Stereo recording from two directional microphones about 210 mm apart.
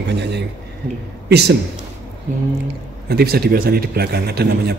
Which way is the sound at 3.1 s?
45° right (ahead or behind).